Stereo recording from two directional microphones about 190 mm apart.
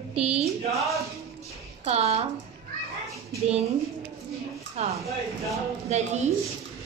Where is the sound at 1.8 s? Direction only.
35° right (ahead or behind).